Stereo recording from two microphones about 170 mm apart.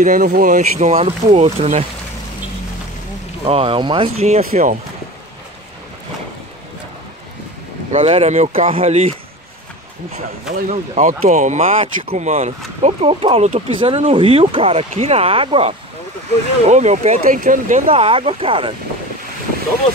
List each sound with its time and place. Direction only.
0.0 s speech: 55° right (ahead or behind)
3.4 s speech: 35° right (ahead or behind)
4.4 s speech: 55° right (ahead or behind)
7.9 s speech: 35° right (ahead or behind)
10.7 s speech: 45° right (ahead or behind)
16.6 s speech: 45° right (ahead or behind)